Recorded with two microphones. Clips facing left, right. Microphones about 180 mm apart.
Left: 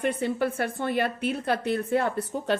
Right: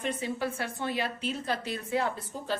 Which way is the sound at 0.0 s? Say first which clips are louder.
Left 6 dB; 60° left (ahead or behind).